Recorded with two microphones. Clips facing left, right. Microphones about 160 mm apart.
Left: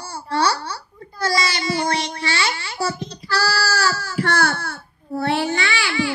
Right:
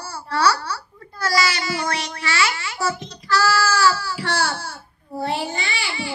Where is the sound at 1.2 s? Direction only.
25° left (ahead or behind); by 4.7 s 55° left (ahead or behind).